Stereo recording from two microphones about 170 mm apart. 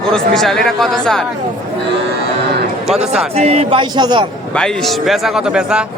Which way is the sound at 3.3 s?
40° right (ahead or behind).